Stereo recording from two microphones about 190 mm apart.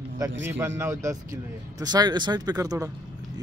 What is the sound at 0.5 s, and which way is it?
A man's voice, 15° right (ahead or behind).